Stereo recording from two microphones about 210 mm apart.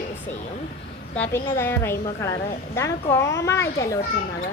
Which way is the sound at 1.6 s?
10° left (ahead or behind).